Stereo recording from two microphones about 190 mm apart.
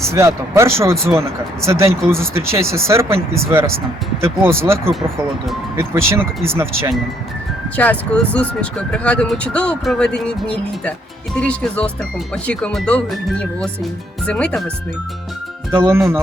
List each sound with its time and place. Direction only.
0.1 s speech: 15° right (ahead or behind)
7.8 s speech: 5° left (ahead or behind)
15.7 s speech: 10° right (ahead or behind)